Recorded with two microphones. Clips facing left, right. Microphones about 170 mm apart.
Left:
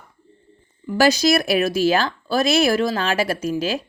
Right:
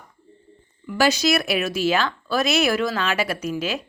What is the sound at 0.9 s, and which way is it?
A woman's voice, 35° left (ahead or behind).